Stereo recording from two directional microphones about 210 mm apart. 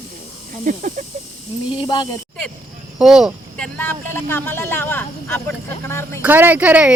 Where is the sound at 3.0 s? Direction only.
5° right (ahead or behind).